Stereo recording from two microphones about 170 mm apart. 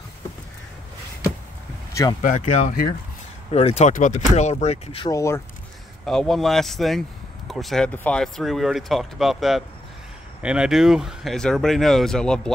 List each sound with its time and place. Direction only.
2.2 s speech: 45° left (ahead or behind)
5.0 s speech: 20° left (ahead or behind)
6.0 s speech: centre (ahead or behind)